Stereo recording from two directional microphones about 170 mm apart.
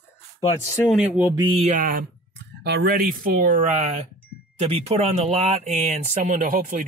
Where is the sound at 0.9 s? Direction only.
5° right (ahead or behind).